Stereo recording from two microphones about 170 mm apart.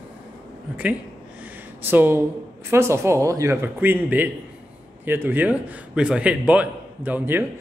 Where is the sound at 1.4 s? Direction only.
10° right (ahead or behind).